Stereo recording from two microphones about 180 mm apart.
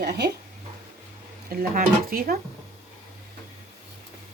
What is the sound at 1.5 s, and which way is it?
Speech, 50° right (ahead or behind).